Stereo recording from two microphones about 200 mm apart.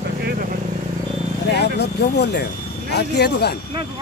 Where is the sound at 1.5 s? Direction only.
55° left (ahead or behind).